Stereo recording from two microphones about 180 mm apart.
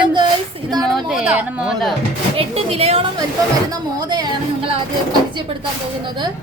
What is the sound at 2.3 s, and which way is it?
Speech, 35° right (ahead or behind).